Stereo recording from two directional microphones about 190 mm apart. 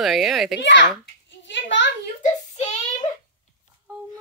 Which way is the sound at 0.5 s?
70° left (ahead or behind).